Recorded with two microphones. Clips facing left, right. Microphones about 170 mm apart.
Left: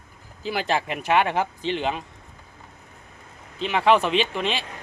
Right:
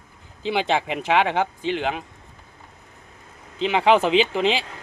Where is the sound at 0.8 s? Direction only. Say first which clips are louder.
Right 1 dB; 90° right.